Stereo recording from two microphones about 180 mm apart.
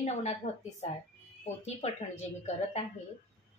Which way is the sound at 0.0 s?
40° left (ahead or behind).